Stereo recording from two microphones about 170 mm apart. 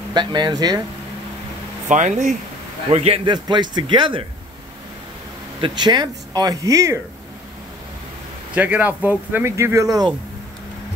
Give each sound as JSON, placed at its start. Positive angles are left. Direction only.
{"t": 0.1, "sound": "speech", "side_deg": -25}
{"t": 1.9, "sound": "speech", "side_deg": -45}
{"t": 5.6, "sound": "speech", "side_deg": -25}
{"t": 8.5, "sound": "speech", "side_deg": -10}